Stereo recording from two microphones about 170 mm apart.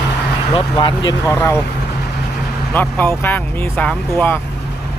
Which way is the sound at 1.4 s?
15° left (ahead or behind).